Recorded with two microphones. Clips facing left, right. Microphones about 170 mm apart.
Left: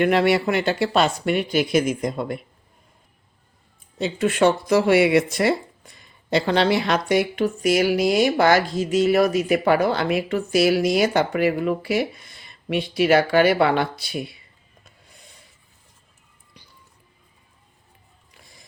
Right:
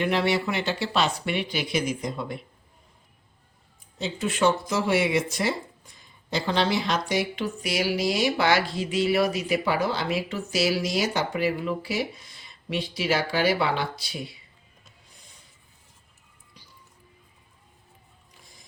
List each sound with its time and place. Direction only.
0.0 s speech: 55° left (ahead or behind)
3.9 s speech: 60° left (ahead or behind)